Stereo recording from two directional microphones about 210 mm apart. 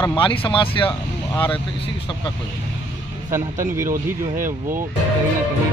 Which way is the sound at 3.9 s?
40° right (ahead or behind).